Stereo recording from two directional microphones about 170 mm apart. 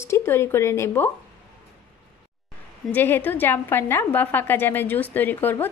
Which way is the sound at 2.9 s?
10° left (ahead or behind).